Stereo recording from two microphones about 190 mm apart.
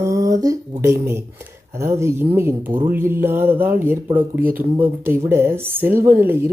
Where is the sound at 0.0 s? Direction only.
15° right (ahead or behind).